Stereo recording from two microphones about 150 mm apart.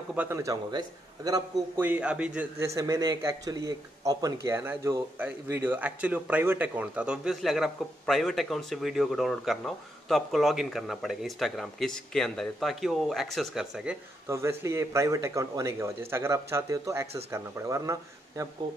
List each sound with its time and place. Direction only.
0.1 s a man's voice: 15° right (ahead or behind)
1.8 s a man's voice: 10° right (ahead or behind)
2.6 s speech: 20° right (ahead or behind); by 13.9 s centre (ahead or behind)
14.2 s a man's voice: 20° right (ahead or behind)